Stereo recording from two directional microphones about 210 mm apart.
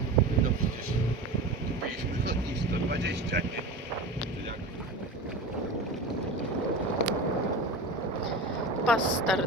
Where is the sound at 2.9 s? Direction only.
55° right (ahead or behind).